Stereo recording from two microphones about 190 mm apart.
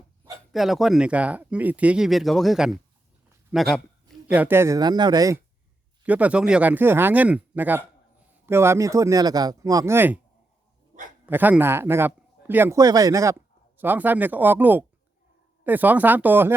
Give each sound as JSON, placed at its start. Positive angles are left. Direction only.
{"t": 0.5, "sound": "speech", "side_deg": 0}
{"t": 6.1, "sound": "speech", "side_deg": -5}
{"t": 11.3, "sound": "speech", "side_deg": -10}